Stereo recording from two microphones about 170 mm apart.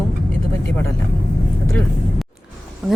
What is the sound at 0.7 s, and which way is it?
Speech, 15° left (ahead or behind).